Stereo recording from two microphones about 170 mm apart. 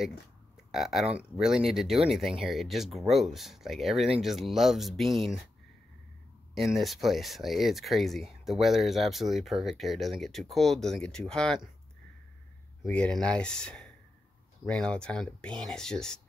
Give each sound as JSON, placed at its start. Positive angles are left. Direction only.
{"t": 0.7, "sound": "speech", "side_deg": 0}
{"t": 6.5, "sound": "speech", "side_deg": 0}
{"t": 12.8, "sound": "speech", "side_deg": 5}